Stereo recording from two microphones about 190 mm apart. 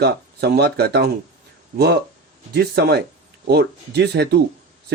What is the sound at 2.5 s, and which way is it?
Speech, 60° right (ahead or behind).